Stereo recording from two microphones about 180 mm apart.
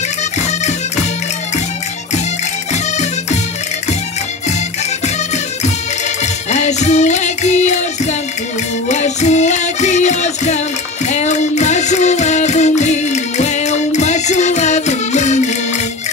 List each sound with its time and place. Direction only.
2.7 s music: 40° left (ahead or behind)
6.5 s music: 40° left (ahead or behind)